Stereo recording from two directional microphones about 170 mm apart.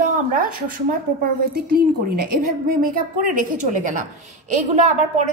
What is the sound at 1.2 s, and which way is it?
A woman's voice, 60° right (ahead or behind).